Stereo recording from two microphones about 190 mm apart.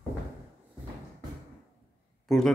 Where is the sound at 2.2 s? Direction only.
Centre (ahead or behind).